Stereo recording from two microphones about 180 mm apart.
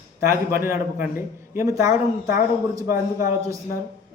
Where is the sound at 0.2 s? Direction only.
15° right (ahead or behind).